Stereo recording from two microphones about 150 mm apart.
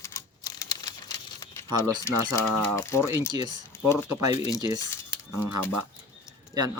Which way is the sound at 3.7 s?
15° left (ahead or behind).